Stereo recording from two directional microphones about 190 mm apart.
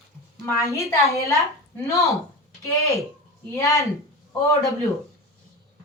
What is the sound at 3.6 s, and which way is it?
Speech, 15° left (ahead or behind).